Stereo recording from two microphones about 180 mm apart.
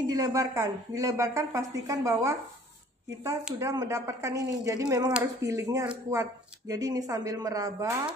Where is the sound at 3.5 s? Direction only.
20° right (ahead or behind).